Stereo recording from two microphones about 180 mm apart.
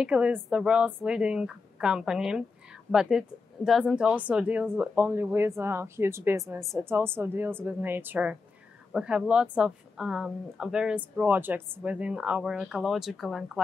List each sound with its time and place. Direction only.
0.0 s a woman's voice: 5° right (ahead or behind)